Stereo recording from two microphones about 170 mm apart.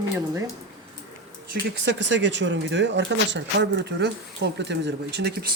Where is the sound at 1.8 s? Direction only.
90° right.